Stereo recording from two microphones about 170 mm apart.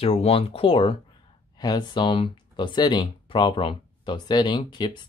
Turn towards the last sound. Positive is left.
turn(degrees=25)  # may be behind; listen again after turning